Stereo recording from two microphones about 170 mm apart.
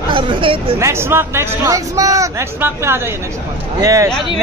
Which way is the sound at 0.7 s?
15° right (ahead or behind).